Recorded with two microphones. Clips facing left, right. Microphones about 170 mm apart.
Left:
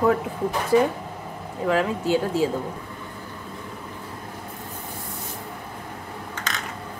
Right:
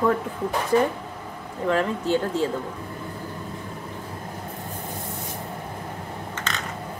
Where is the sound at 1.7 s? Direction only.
10° left (ahead or behind).